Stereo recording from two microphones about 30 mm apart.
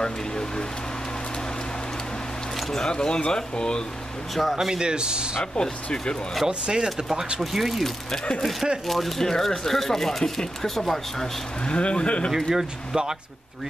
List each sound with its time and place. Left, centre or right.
0.0 s speech: left
2.9 s speech: left
4.4 s speech: centre
4.7 s speech: right
5.4 s speech: left
6.6 s speech: right
7.3 s speech: centre
9.2 s speech: centre
11.6 s speech: left
12.4 s speech: right